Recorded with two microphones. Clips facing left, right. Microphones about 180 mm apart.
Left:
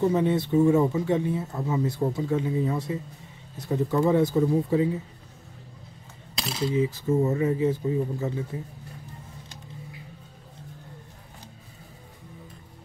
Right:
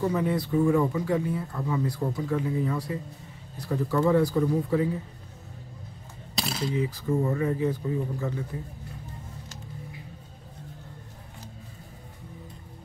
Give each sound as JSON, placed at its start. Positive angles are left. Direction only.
{"t": 0.0, "sound": "speech", "side_deg": 25}
{"t": 6.7, "sound": "speech", "side_deg": 25}